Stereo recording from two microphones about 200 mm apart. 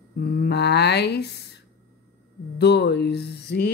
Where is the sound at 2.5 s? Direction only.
55° left (ahead or behind).